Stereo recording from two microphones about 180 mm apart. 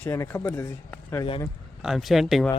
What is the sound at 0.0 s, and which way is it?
Speech, 10° left (ahead or behind).